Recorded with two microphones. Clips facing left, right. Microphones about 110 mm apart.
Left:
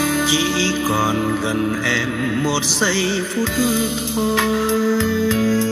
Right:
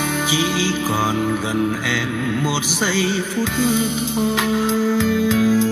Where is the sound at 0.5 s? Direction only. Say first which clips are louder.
Left 1 dB; 15° right (ahead or behind).